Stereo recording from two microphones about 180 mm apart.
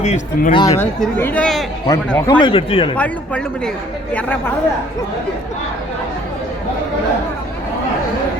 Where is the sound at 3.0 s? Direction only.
5° left (ahead or behind).